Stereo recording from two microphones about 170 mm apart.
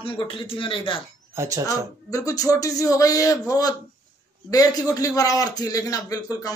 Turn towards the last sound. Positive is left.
turn(degrees=20)  # may be behind; listen again after turning